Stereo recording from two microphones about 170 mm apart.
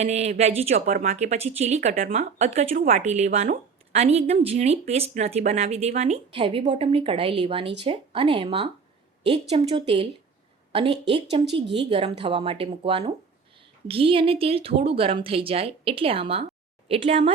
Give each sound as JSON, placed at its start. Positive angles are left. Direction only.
{"t": 0.0, "sound": "speech", "side_deg": -40}